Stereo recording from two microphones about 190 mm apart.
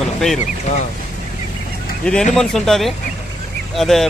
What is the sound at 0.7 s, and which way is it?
Speech, 35° left (ahead or behind).